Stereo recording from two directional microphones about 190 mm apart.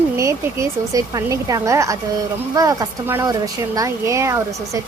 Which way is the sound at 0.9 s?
20° right (ahead or behind).